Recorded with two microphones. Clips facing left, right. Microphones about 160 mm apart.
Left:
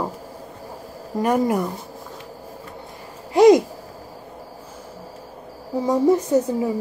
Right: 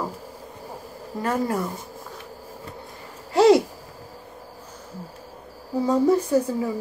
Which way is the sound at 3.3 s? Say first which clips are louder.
Left 3 dB; 15° left (ahead or behind).